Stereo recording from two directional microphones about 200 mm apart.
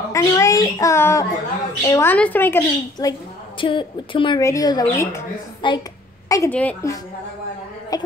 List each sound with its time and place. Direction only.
0.1 s a woman's voice: 15° left (ahead or behind)
3.6 s a woman's voice: 25° left (ahead or behind)